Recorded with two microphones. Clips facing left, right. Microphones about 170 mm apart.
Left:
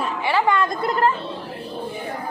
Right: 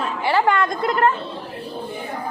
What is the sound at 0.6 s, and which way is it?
Speech, centre (ahead or behind).